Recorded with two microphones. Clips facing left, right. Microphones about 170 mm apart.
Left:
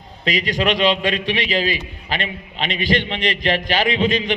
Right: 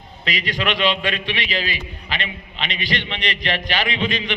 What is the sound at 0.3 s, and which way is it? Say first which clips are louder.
A man's voice: left 4 dB; 45° left (ahead or behind).